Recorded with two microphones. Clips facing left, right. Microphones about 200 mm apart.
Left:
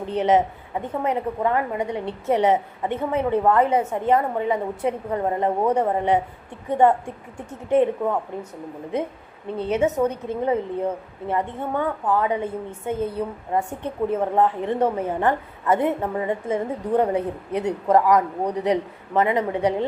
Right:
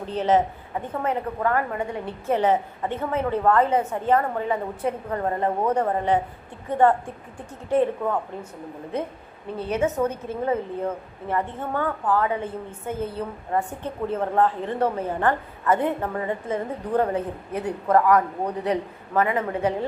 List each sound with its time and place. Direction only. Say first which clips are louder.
0.0 s a woman's voice: left 2 dB; 20° left (ahead or behind)
9.6 s a woman's voice: left 3 dB; 20° left (ahead or behind)